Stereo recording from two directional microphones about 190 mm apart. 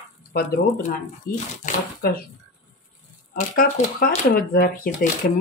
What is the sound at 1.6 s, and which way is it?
Speech, 40° left (ahead or behind).